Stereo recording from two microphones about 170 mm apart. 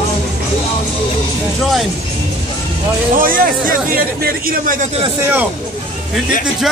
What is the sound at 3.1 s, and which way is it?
Speech, 55° right (ahead or behind).